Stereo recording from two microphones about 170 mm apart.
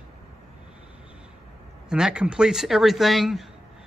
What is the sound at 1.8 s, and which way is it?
Speech, 5° right (ahead or behind).